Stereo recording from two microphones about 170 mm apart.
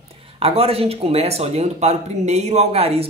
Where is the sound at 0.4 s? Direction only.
35° right (ahead or behind).